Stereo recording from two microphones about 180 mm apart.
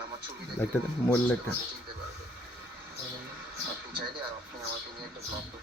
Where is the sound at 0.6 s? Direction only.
15° left (ahead or behind).